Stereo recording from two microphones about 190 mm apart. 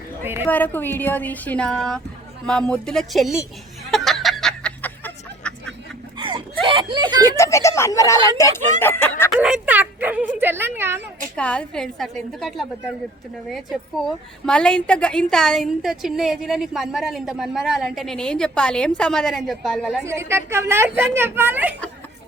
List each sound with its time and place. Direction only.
0.4 s a woman's voice: 10° left (ahead or behind)
3.9 s music: centre (ahead or behind)
6.1 s whimper: 25° right (ahead or behind)
7.3 s speech: 15° left (ahead or behind)
9.3 s a woman's voice: 5° right (ahead or behind)
11.3 s a woman's voice: 5° left (ahead or behind)
20.1 s speech: 15° right (ahead or behind)